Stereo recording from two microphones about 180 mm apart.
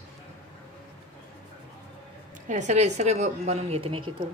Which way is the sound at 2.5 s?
40° right (ahead or behind).